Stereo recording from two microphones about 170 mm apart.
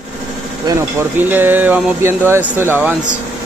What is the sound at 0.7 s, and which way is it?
Speech, 15° right (ahead or behind).